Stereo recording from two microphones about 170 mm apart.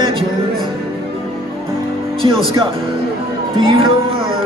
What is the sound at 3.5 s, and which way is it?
Music, 35° right (ahead or behind).